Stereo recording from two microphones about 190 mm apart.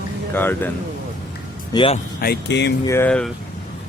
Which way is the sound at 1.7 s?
30° left (ahead or behind).